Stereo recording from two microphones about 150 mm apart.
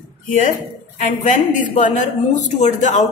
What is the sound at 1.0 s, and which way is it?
A woman's voice, 55° left (ahead or behind).